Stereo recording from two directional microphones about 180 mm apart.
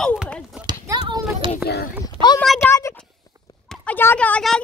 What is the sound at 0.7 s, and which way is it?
Children playing, 25° right (ahead or behind).